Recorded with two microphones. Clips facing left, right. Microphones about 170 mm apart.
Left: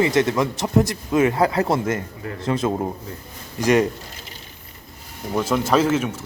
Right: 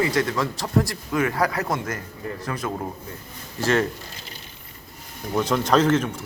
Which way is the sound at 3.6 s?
15° left (ahead or behind).